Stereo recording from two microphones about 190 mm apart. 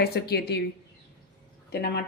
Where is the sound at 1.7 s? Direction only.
55° left (ahead or behind).